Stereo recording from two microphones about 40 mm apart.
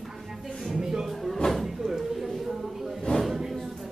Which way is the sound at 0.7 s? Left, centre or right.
Centre.